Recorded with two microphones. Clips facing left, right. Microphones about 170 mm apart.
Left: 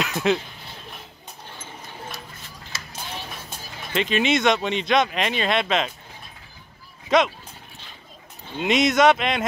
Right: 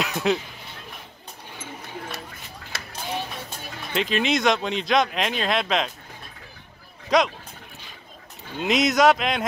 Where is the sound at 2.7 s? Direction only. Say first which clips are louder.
Right 2 dB; 60° right (ahead or behind).